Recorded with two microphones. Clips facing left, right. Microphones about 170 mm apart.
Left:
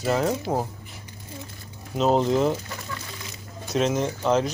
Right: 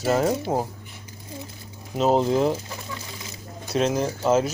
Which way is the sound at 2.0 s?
Centre (ahead or behind).